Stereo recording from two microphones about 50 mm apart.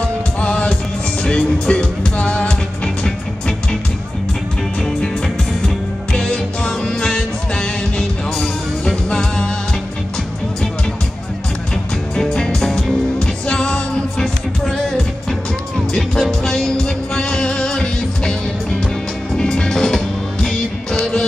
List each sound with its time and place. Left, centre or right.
0.4 s music: centre
4.8 s music: centre
12.2 s music: centre
15.9 s music: centre